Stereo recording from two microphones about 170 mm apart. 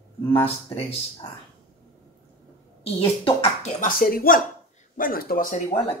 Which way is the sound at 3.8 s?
60° left (ahead or behind).